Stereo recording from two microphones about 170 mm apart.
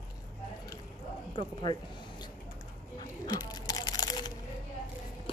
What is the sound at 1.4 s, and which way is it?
Speech, 30° left (ahead or behind).